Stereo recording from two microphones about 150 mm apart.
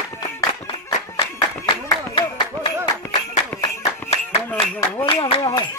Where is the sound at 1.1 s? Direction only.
35° left (ahead or behind).